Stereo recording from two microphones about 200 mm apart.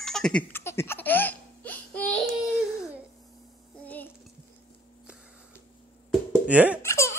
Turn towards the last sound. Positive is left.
turn(degrees=15)  # may be behind; listen again after turning